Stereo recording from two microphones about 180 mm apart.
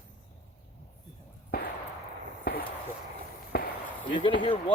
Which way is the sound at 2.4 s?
55° left (ahead or behind).